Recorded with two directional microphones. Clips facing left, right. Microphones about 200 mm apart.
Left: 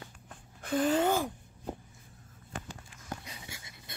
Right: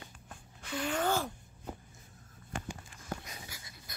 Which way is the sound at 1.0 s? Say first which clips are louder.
Left 3 dB; 15° left (ahead or behind).